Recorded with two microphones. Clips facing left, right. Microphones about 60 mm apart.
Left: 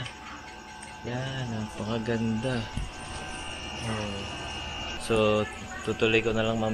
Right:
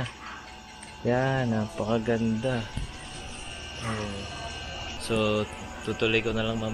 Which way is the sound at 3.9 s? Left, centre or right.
Left.